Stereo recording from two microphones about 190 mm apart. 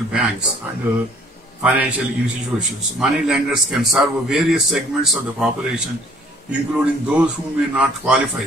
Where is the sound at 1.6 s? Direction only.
5° right (ahead or behind).